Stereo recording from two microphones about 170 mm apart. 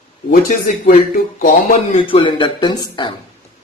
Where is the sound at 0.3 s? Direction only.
55° left (ahead or behind).